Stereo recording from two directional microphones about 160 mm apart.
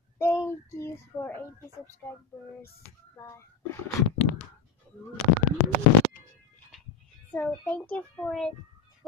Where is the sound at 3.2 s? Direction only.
15° left (ahead or behind).